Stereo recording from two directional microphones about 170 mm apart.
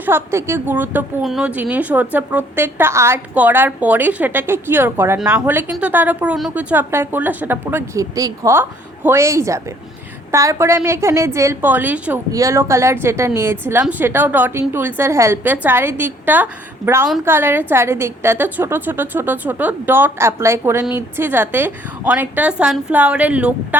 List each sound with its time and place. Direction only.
0.0 s a woman's voice: 15° right (ahead or behind)